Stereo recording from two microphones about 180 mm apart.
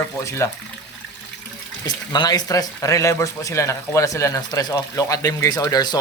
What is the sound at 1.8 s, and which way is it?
Speech, 25° left (ahead or behind).